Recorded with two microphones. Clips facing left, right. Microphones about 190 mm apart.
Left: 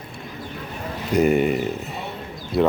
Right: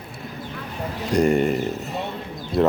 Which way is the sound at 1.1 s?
5° left (ahead or behind).